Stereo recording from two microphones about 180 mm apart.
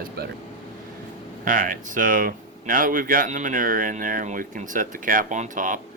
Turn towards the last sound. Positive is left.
turn(degrees=-45)  # may be behind; listen again after turning